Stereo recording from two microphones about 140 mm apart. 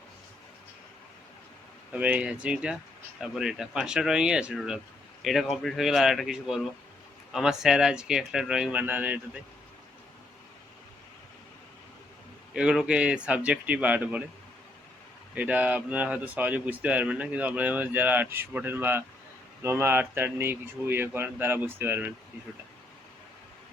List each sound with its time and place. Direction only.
1.9 s speech: 10° right (ahead or behind)
12.5 s speech: 5° right (ahead or behind)
15.4 s speech: 10° right (ahead or behind)